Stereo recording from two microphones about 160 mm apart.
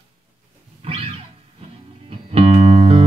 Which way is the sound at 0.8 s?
35° right (ahead or behind).